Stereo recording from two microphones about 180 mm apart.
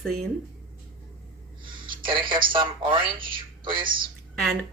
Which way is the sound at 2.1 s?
30° right (ahead or behind).